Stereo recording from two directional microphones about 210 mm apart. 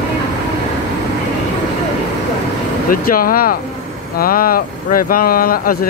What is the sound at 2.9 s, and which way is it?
Speech, 45° left (ahead or behind).